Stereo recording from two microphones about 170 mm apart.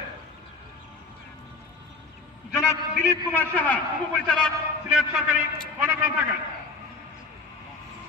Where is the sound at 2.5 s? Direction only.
15° left (ahead or behind).